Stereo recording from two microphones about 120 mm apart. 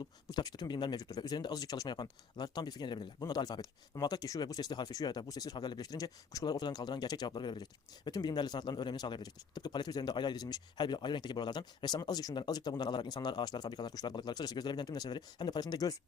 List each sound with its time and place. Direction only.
0.0 s speech: 35° left (ahead or behind)